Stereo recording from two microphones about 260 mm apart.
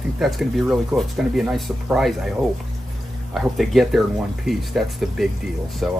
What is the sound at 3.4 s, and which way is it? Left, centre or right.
Speech, centre.